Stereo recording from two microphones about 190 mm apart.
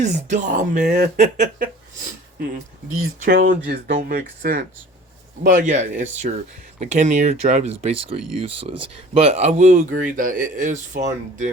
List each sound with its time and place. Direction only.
0.0 s speech: 40° right (ahead or behind)
3.2 s speech: 50° right (ahead or behind)